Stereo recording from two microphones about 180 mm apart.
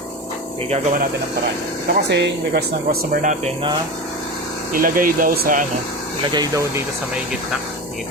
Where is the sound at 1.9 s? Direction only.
75° right (ahead or behind).